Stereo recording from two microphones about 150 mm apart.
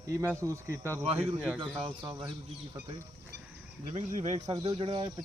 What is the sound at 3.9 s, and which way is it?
Speech, 50° right (ahead or behind).